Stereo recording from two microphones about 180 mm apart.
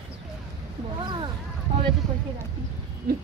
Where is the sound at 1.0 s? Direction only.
25° right (ahead or behind).